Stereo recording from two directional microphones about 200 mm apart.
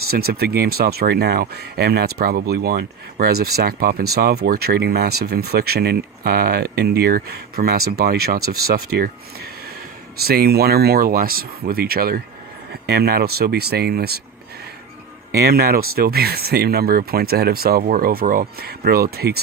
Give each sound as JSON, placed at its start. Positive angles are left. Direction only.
{"t": 0.1, "sound": "speech", "side_deg": -50}
{"t": 15.3, "sound": "speech", "side_deg": -50}